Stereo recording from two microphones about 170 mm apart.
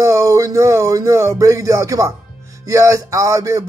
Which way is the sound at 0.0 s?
20° right (ahead or behind).